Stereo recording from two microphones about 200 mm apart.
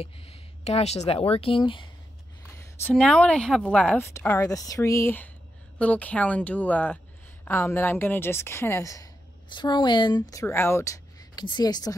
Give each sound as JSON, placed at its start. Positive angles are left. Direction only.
{"t": 0.0, "sound": "speech", "side_deg": 30}
{"t": 2.5, "sound": "a woman's voice", "side_deg": 10}